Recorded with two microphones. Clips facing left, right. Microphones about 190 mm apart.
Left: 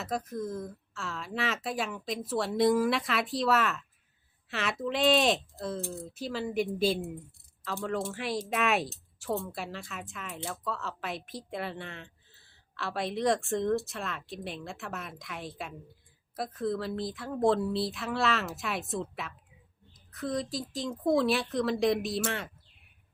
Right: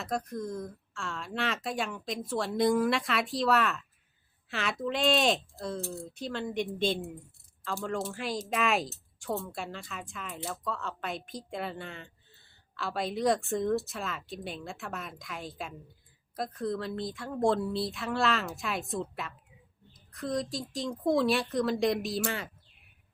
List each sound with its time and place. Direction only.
0.0 s speech: centre (ahead or behind)
20.1 s speech: centre (ahead or behind)